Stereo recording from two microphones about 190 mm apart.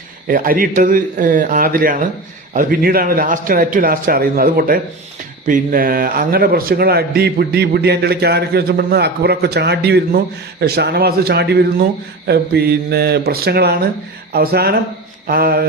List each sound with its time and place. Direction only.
0.3 s a man's voice: 50° right (ahead or behind)